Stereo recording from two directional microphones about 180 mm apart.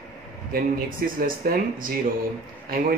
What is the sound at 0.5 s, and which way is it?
Speech, 50° right (ahead or behind).